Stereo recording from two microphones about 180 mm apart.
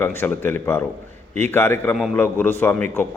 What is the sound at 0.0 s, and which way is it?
A man's voice, 10° left (ahead or behind).